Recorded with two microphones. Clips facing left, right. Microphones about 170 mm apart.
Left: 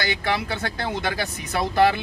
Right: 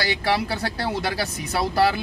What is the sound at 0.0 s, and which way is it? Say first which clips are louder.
Speech: right 2 dB; 35° right (ahead or behind).